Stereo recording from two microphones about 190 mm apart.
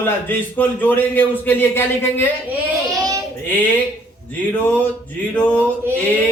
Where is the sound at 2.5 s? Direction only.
15° right (ahead or behind).